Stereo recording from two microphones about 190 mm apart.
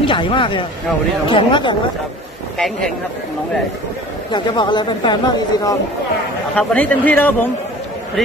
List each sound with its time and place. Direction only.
0.0 s speech: 25° left (ahead or behind)
2.5 s speech: centre (ahead or behind)
4.3 s speech: 25° left (ahead or behind)
6.5 s speech: 5° left (ahead or behind)